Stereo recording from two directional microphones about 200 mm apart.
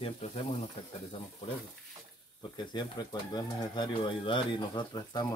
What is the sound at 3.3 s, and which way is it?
Speech, 20° left (ahead or behind).